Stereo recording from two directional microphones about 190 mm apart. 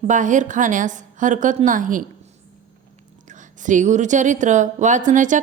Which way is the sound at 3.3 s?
40° right (ahead or behind).